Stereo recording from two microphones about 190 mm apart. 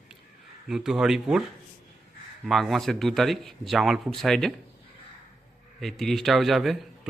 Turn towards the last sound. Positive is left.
turn(degrees=0)  # may be behind; listen again after turning